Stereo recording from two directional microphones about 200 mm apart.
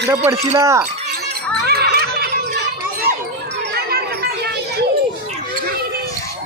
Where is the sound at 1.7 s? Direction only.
50° right (ahead or behind).